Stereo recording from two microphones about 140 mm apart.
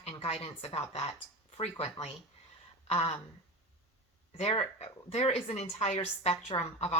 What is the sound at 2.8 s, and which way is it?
Speech, 45° left (ahead or behind).